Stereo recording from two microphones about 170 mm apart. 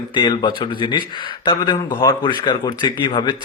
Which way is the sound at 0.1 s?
25° left (ahead or behind).